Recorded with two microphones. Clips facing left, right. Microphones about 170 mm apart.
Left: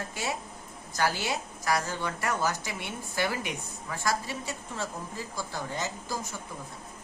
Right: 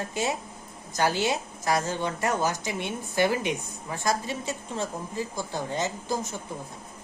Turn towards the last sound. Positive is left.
turn(degrees=-20)  # may be behind; listen again after turning